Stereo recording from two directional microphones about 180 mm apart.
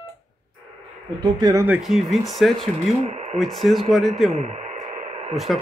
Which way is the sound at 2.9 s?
35° right (ahead or behind).